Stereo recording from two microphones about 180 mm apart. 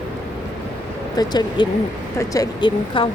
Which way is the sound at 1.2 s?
25° left (ahead or behind).